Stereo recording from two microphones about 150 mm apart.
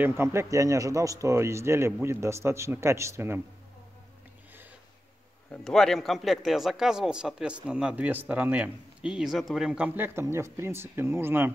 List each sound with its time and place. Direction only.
0.0 s speech: 15° right (ahead or behind)
5.5 s speech: 5° left (ahead or behind)
9.8 s speech: 15° right (ahead or behind)